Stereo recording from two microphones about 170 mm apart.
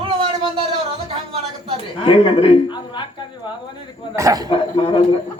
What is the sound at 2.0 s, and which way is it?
Speech, 30° left (ahead or behind).